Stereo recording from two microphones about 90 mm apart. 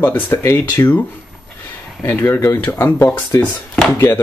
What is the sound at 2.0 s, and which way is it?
Speech, 25° left (ahead or behind).